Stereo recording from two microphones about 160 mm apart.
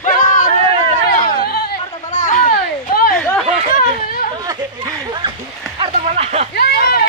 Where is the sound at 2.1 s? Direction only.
55° left (ahead or behind).